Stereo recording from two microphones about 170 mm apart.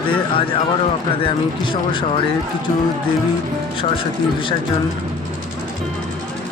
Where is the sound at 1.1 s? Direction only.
30° left (ahead or behind).